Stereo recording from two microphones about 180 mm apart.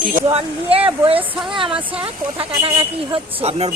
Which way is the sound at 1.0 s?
30° right (ahead or behind).